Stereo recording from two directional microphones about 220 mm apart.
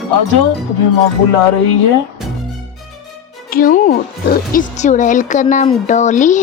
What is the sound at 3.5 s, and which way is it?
Speech, 40° left (ahead or behind).